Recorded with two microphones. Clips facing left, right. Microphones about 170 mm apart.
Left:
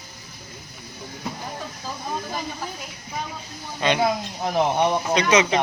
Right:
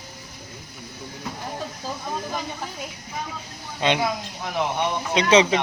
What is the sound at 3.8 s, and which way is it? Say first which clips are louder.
Speech: even; 20° right (ahead or behind).